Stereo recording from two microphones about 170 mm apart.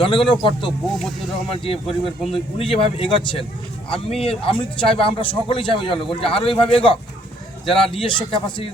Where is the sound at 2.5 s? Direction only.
35° left (ahead or behind).